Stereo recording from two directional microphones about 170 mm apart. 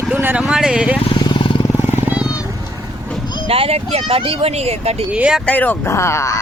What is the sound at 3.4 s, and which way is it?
Speech, 35° right (ahead or behind).